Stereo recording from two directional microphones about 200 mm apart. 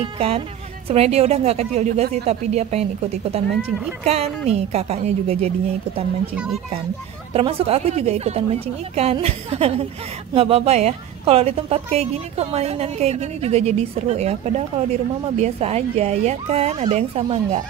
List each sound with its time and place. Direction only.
0.0 s a woman's voice: 30° right (ahead or behind)
6.3 s speech: 5° right (ahead or behind)
7.3 s a woman's voice: 30° right (ahead or behind)